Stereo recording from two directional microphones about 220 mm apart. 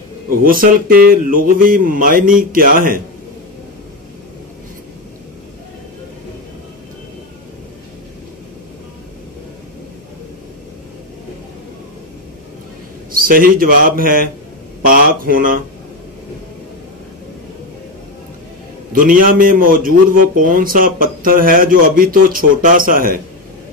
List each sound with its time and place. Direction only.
0.3 s a man's voice: 40° right (ahead or behind)
13.1 s a man's voice: 40° right (ahead or behind)
18.9 s a man's voice: 40° right (ahead or behind)